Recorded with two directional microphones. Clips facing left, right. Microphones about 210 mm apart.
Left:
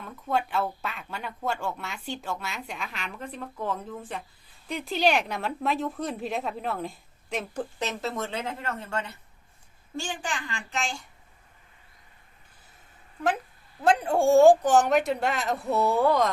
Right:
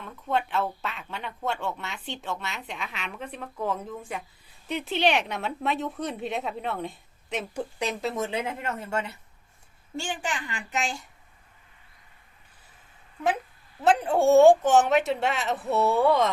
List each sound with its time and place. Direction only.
0.0 s a woman's voice: centre (ahead or behind)
4.7 s a woman's voice: centre (ahead or behind)
8.1 s speech: 20° right (ahead or behind)
10.7 s a woman's voice: 5° right (ahead or behind)
13.8 s a woman's voice: 5° right (ahead or behind)